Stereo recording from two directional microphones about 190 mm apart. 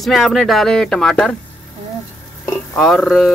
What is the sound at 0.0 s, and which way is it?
Speech, centre (ahead or behind).